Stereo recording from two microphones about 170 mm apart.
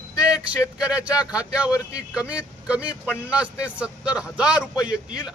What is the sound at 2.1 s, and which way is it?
A man's voice, 5° right (ahead or behind).